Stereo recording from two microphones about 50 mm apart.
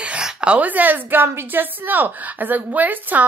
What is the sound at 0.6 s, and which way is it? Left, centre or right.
A woman's voice, right.